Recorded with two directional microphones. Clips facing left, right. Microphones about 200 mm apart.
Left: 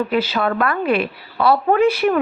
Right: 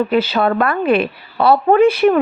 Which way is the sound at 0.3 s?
30° right (ahead or behind).